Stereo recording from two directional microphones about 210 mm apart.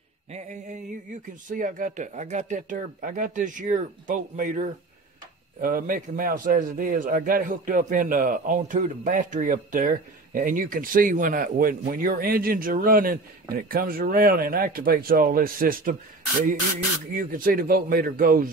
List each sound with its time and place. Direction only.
0.3 s a man's voice: 35° right (ahead or behind)
17.1 s speech: 40° right (ahead or behind)